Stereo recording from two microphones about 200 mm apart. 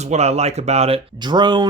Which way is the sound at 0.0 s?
35° right (ahead or behind).